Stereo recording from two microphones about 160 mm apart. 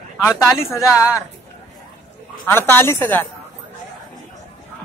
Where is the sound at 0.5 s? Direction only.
20° left (ahead or behind).